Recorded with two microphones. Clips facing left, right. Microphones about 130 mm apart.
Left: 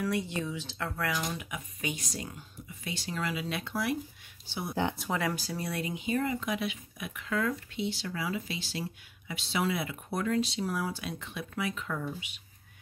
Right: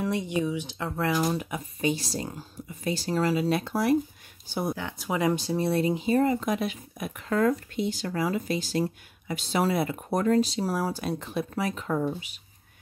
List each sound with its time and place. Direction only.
0.0 s speech: 20° right (ahead or behind)
1.1 s speech: 40° right (ahead or behind)
5.1 s speech: 20° right (ahead or behind); by 12.1 s 40° right (ahead or behind)